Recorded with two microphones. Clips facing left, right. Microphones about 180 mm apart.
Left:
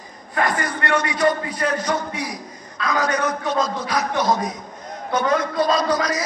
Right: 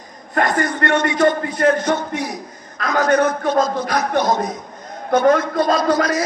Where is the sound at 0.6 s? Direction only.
45° right (ahead or behind).